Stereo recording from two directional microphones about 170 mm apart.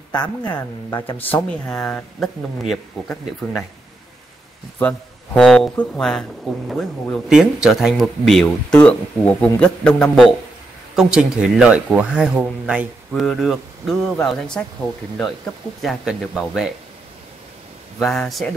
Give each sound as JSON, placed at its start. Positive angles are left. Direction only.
{"t": 0.6, "sound": "speech", "side_deg": 25}
{"t": 1.1, "sound": "speech", "side_deg": 10}
{"t": 4.7, "sound": "speech", "side_deg": 5}
{"t": 15.8, "sound": "speech", "side_deg": 0}
{"t": 17.9, "sound": "speech", "side_deg": 0}